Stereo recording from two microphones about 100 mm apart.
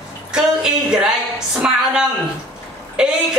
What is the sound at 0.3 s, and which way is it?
Music, 5° right (ahead or behind).